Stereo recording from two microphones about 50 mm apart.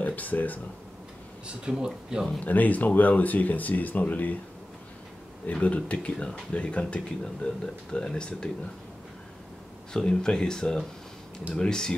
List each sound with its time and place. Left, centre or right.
0.0 s speech: left
1.5 s speech: centre
2.4 s speech: left
5.5 s speech: left
9.9 s speech: centre